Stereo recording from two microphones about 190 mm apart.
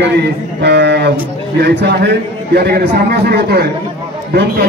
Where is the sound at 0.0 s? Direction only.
60° right (ahead or behind).